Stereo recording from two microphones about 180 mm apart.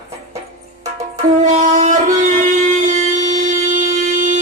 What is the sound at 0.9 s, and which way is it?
Music, 40° right (ahead or behind).